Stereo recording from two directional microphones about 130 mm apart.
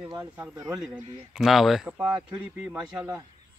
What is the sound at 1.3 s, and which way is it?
Speech, centre (ahead or behind).